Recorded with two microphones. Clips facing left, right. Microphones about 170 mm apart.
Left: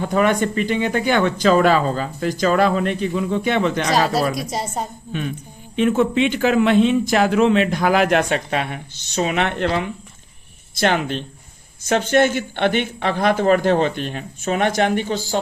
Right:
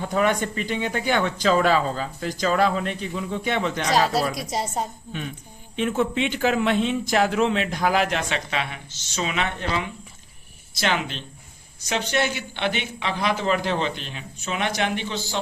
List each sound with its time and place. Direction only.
0.0 s speech: 65° left (ahead or behind)
5.7 s speech: 80° left; by 9.5 s 50° left (ahead or behind)
10.8 s speech: 50° left (ahead or behind)